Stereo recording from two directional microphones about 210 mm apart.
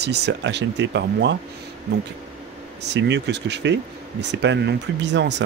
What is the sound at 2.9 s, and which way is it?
Speech, 55° right (ahead or behind).